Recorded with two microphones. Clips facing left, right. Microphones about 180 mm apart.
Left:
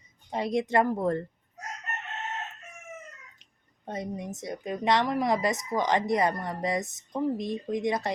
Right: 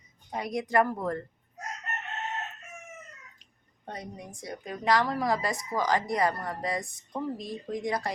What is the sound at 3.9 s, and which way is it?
A woman's voice, 25° left (ahead or behind).